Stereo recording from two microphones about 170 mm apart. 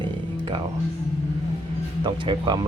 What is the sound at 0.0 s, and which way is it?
Music, 30° right (ahead or behind).